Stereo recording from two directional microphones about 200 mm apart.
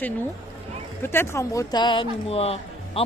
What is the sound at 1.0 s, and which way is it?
Speech, 10° left (ahead or behind).